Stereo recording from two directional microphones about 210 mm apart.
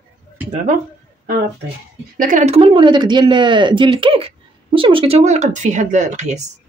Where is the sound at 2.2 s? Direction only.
40° right (ahead or behind).